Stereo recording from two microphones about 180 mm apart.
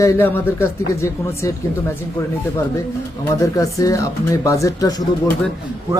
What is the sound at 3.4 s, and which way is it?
Speech, 20° left (ahead or behind).